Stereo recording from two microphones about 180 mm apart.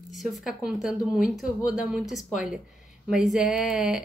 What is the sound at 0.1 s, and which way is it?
Speech, centre (ahead or behind).